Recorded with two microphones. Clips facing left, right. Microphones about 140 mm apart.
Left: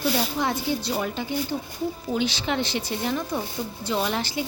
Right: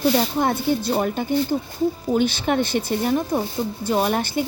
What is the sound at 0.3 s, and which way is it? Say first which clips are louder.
Speech: right 5 dB; 50° right (ahead or behind).